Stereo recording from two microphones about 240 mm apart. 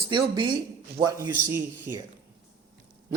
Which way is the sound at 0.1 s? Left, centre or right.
Centre.